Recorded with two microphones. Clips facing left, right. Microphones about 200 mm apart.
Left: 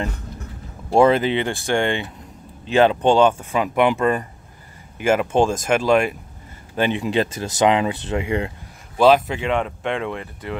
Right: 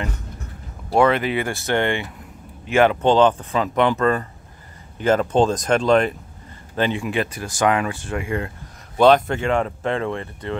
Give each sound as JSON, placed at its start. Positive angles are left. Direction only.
{"t": 0.9, "sound": "speech", "side_deg": 25}
{"t": 8.9, "sound": "speech", "side_deg": 5}